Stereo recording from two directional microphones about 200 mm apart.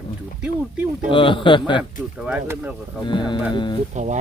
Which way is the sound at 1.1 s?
25° left (ahead or behind).